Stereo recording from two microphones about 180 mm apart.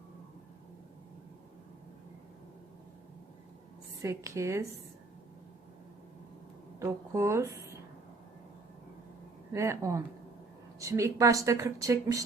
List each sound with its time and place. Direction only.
4.0 s speech: 15° right (ahead or behind)
6.7 s speech: 15° right (ahead or behind)
9.5 s speech: 15° right (ahead or behind)